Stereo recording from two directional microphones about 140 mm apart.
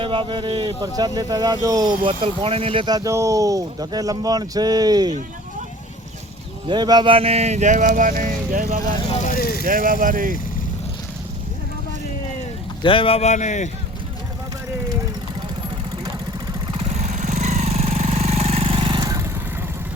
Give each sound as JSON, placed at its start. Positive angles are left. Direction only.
{"t": 0.0, "sound": "speech", "side_deg": -35}
{"t": 6.7, "sound": "speech", "side_deg": -30}
{"t": 9.1, "sound": "vehicle", "side_deg": 70}
{"t": 9.6, "sound": "speech", "side_deg": -75}
{"t": 12.8, "sound": "a man's voice", "side_deg": 40}
{"t": 16.7, "sound": "vehicle", "side_deg": -55}